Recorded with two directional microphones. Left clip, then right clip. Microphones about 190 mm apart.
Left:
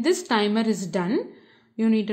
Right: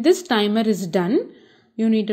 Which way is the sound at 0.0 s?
20° right (ahead or behind).